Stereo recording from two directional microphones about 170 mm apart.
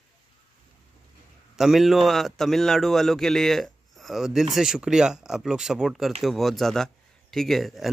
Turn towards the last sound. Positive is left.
turn(degrees=0)  # may be behind; listen again after turning